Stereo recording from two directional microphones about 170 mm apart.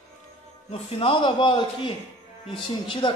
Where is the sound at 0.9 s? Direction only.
30° left (ahead or behind).